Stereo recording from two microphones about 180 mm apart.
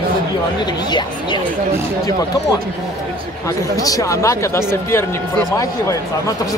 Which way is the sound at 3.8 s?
20° left (ahead or behind).